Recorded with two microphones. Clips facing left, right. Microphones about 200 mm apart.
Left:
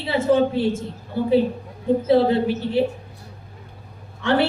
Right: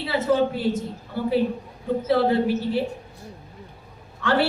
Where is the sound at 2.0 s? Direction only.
25° left (ahead or behind).